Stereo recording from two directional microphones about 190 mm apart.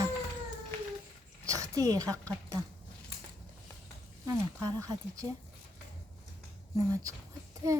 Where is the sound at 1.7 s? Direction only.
20° right (ahead or behind).